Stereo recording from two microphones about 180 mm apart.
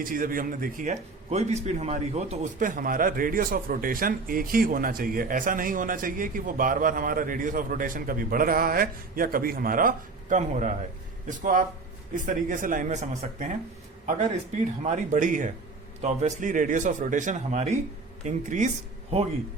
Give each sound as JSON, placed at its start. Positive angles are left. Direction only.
{"t": 0.0, "sound": "a man's voice", "side_deg": -50}
{"t": 14.8, "sound": "a man's voice", "side_deg": -45}